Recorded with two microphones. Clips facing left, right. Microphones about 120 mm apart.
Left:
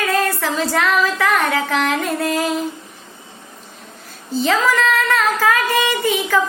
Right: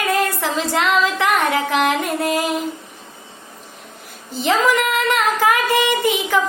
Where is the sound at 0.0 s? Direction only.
15° right (ahead or behind).